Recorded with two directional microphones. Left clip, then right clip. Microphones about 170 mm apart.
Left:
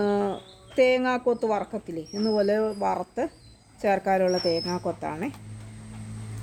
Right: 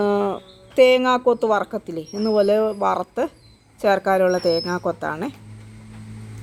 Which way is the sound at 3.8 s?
15° right (ahead or behind).